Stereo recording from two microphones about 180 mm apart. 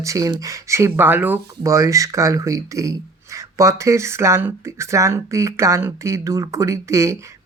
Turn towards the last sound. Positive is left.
turn(degrees=-15)  # may be behind; listen again after turning